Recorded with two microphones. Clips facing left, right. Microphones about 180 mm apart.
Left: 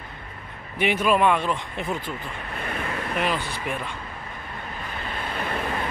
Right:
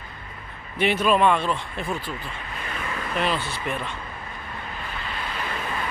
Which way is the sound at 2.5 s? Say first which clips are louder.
Left 4 dB; 55° left (ahead or behind).